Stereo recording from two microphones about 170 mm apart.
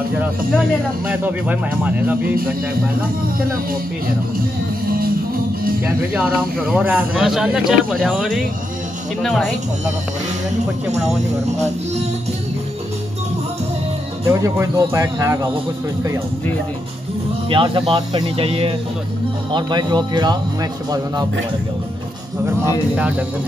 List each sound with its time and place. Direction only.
1.0 s speech: 10° right (ahead or behind)
6.1 s speech: 5° right (ahead or behind)
14.2 s speech: 20° right (ahead or behind)
17.5 s speech: 30° right (ahead or behind)
22.9 s speech: 5° right (ahead or behind)